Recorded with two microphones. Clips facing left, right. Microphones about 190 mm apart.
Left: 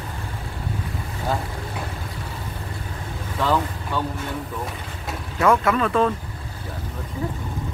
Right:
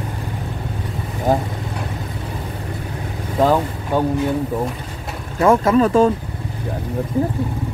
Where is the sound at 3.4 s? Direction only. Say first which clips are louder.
Right 6 dB; 45° right (ahead or behind).